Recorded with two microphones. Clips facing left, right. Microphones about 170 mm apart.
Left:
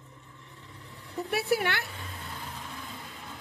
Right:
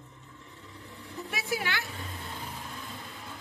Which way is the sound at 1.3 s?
60° left (ahead or behind).